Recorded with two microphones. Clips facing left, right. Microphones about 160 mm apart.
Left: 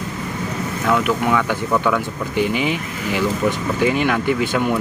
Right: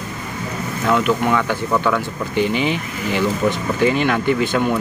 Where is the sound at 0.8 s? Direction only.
5° left (ahead or behind).